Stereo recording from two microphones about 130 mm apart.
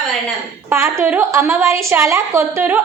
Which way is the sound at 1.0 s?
15° right (ahead or behind).